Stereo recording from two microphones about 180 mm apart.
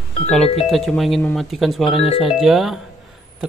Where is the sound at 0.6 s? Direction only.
Centre (ahead or behind).